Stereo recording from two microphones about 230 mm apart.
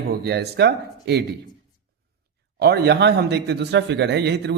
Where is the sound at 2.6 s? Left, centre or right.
Right.